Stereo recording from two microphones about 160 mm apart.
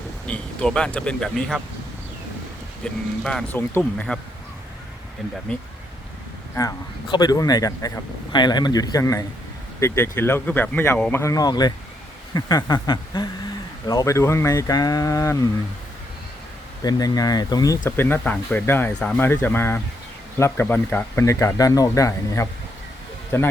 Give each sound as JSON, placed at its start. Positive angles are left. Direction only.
{"t": 0.3, "sound": "speech", "side_deg": 5}
{"t": 2.8, "sound": "speech", "side_deg": 5}
{"t": 6.6, "sound": "speech", "side_deg": 20}
{"t": 11.2, "sound": "speech", "side_deg": 20}
{"t": 16.8, "sound": "speech", "side_deg": 25}
{"t": 17.8, "sound": "speech", "side_deg": 15}